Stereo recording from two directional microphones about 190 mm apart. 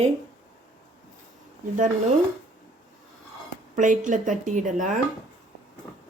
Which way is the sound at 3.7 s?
40° right (ahead or behind).